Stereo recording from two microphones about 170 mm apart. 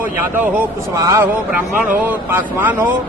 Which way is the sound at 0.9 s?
20° right (ahead or behind).